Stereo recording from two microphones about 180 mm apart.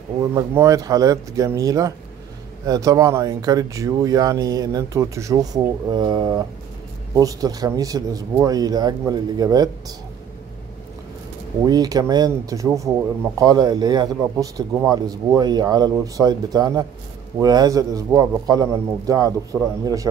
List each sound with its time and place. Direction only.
0.2 s speech: 15° right (ahead or behind)
11.6 s speech: 20° right (ahead or behind)